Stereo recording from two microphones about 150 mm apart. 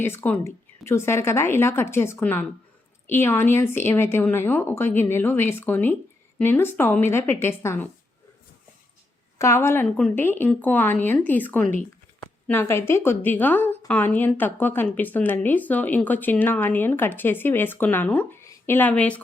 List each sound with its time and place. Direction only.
0.0 s a woman's voice: 15° left (ahead or behind)
9.4 s a woman's voice: 20° left (ahead or behind)